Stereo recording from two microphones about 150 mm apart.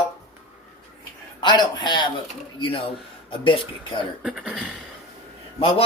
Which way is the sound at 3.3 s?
35° left (ahead or behind).